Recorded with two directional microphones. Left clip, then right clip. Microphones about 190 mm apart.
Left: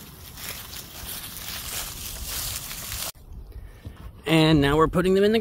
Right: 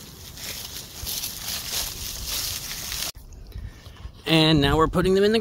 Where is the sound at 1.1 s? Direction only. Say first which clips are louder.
Right 7 dB; 55° right (ahead or behind).